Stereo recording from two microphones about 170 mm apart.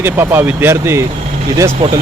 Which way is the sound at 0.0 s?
15° right (ahead or behind).